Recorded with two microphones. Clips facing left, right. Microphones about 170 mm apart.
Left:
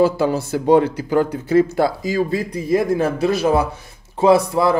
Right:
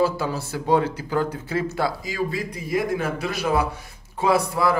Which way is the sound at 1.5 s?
40° left (ahead or behind).